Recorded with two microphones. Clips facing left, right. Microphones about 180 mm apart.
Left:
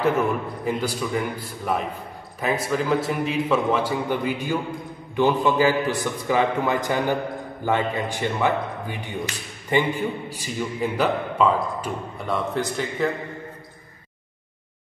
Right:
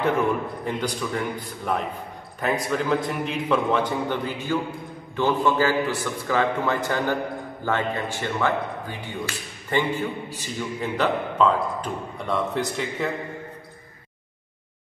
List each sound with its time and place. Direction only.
0.7 s a man's voice: 5° left (ahead or behind)